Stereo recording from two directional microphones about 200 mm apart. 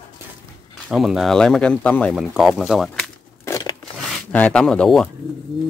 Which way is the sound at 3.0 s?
15° left (ahead or behind).